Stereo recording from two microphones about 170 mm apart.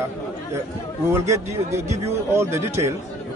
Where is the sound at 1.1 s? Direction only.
15° right (ahead or behind).